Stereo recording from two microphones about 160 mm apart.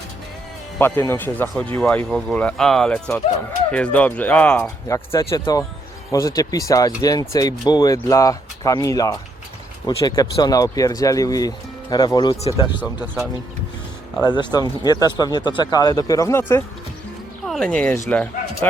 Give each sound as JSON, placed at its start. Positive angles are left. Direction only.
{"t": 0.8, "sound": "speech", "side_deg": 15}
{"t": 5.2, "sound": "speech", "side_deg": 25}
{"t": 14.3, "sound": "speech", "side_deg": 25}
{"t": 17.4, "sound": "speech", "side_deg": 5}